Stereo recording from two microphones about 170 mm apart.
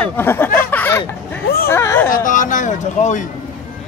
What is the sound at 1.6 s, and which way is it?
Speech, 15° left (ahead or behind).